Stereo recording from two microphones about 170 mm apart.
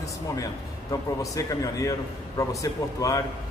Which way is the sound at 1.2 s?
20° left (ahead or behind).